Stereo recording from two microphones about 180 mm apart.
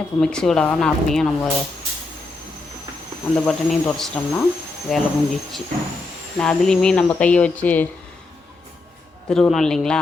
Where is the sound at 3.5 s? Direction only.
5° left (ahead or behind).